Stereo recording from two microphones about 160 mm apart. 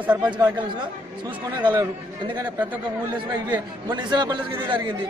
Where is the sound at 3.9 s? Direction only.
30° right (ahead or behind).